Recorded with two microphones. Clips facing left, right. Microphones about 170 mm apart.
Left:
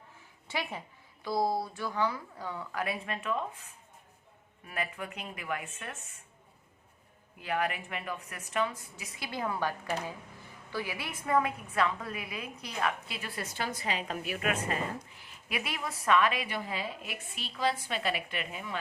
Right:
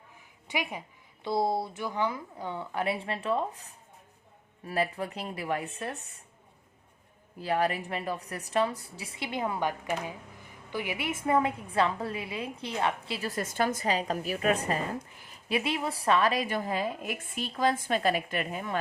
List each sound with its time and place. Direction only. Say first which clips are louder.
0.4 s a woman's voice: right 3 dB; 15° right (ahead or behind)
1.2 s a woman's voice: right 2 dB; 25° right (ahead or behind)
7.3 s a woman's voice: right 4 dB; 35° right (ahead or behind)